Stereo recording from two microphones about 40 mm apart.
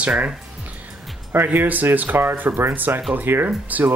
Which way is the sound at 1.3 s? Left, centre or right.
Right.